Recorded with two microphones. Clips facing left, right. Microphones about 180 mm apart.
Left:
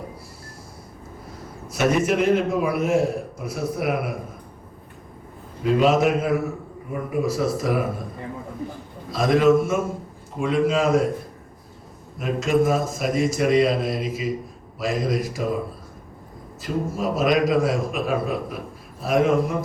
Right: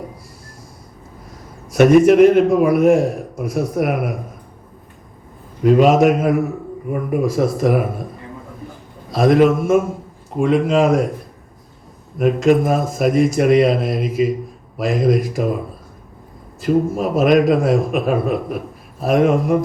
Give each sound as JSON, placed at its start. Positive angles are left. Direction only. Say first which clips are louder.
{"t": 1.7, "sound": "a man's voice", "louder": "right 11 dB", "side_deg": -55}
{"t": 5.6, "sound": "a man's voice", "louder": "right 6 dB", "side_deg": -50}
{"t": 9.1, "sound": "a man's voice", "louder": "right 4 dB", "side_deg": -55}
{"t": 12.2, "sound": "a man's voice", "louder": "right 6 dB", "side_deg": -55}
{"t": 16.6, "sound": "a man's voice", "louder": "right 9 dB", "side_deg": -55}